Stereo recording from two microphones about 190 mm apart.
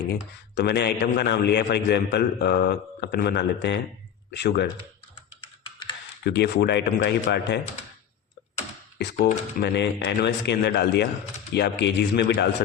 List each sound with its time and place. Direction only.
0.1 s a man's voice: 60° left (ahead or behind)
6.2 s a man's voice: 60° left (ahead or behind)
9.1 s a man's voice: 60° left (ahead or behind)